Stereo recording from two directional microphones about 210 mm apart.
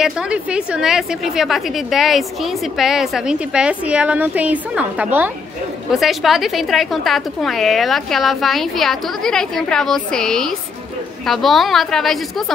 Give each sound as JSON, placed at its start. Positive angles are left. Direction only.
{"t": 0.0, "sound": "a woman's voice", "side_deg": -5}